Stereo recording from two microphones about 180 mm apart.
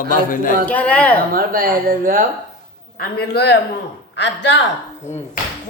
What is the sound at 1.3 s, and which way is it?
Speech, 55° right (ahead or behind).